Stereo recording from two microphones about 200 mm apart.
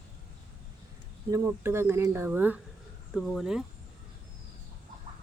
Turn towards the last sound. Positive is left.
turn(degrees=-5)  # may be behind; listen again after turning